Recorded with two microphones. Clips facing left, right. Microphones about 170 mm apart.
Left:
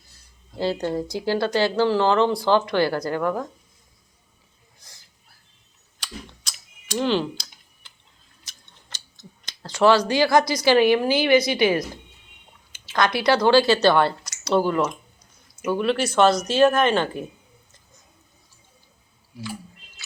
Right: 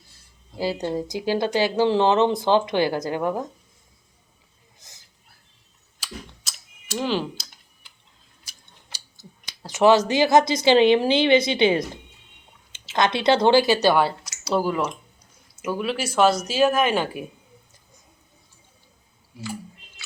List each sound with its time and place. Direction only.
0.6 s speech: 15° right (ahead or behind)
4.8 s a sound: 20° right (ahead or behind)
6.0 s mechanisms: 5° right (ahead or behind)
8.9 s speech: 10° right (ahead or behind); by 11.9 s 25° right (ahead or behind)
12.9 s speech: 20° right (ahead or behind)
13.8 s speech: 5° right (ahead or behind)